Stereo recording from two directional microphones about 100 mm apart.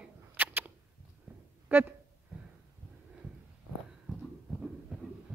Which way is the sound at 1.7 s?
20° right (ahead or behind).